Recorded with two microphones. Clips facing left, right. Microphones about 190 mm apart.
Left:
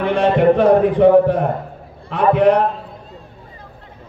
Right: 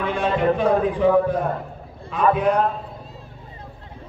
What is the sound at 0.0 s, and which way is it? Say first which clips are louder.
A man's voice: left 7 dB; 70° left (ahead or behind).